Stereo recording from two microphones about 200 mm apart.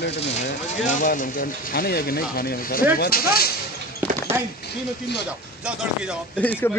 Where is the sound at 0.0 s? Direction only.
60° left (ahead or behind).